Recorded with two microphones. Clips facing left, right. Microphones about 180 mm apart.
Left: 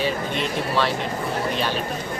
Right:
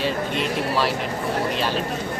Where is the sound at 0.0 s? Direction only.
5° right (ahead or behind).